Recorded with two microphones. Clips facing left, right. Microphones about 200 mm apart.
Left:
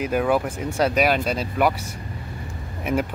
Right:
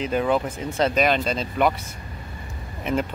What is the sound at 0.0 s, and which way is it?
Speech, 10° left (ahead or behind).